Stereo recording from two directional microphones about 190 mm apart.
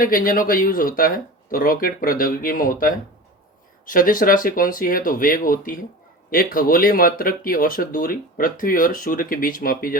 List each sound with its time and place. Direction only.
0.0 s speech: 45° left (ahead or behind)